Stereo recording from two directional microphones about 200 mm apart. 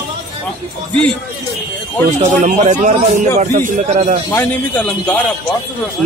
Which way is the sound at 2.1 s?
35° right (ahead or behind).